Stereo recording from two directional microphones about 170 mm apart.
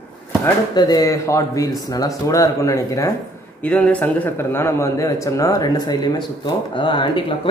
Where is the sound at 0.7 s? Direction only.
25° left (ahead or behind).